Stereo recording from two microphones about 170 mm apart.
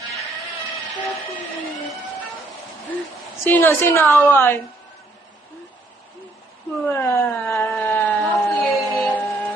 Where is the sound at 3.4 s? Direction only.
10° left (ahead or behind).